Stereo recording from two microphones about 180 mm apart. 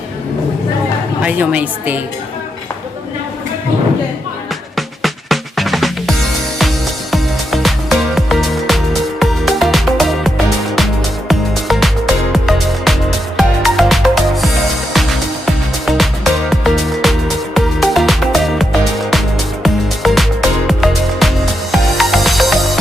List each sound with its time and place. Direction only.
1.2 s a woman's voice: 10° right (ahead or behind)
5.0 s music: centre (ahead or behind)
15.9 s music: centre (ahead or behind)